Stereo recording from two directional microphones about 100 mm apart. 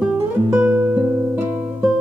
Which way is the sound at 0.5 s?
20° right (ahead or behind).